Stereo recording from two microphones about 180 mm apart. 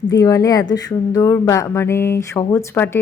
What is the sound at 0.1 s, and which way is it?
Speech, 20° left (ahead or behind).